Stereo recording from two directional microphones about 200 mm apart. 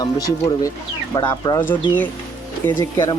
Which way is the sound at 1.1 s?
15° left (ahead or behind).